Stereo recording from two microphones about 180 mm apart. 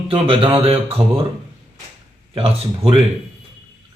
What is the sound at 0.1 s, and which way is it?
Speech, 30° right (ahead or behind).